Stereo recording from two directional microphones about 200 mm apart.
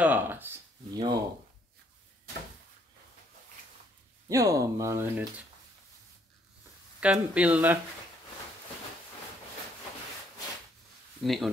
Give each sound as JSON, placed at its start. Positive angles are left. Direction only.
{"t": 0.0, "sound": "speech", "side_deg": -10}
{"t": 0.9, "sound": "speech", "side_deg": -20}
{"t": 4.3, "sound": "speech", "side_deg": -15}
{"t": 7.0, "sound": "speech", "side_deg": -5}
{"t": 11.2, "sound": "speech", "side_deg": 0}